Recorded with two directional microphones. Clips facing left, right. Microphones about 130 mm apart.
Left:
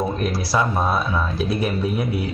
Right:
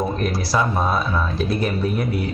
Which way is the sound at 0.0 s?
Centre (ahead or behind).